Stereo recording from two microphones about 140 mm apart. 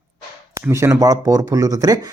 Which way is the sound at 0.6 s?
20° right (ahead or behind).